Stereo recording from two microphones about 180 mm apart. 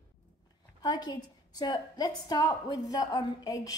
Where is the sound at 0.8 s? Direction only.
25° left (ahead or behind).